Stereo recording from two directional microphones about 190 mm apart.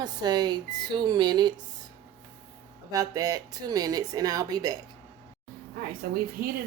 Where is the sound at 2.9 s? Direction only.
20° right (ahead or behind).